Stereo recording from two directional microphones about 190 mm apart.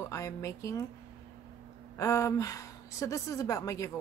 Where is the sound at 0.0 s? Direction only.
15° left (ahead or behind).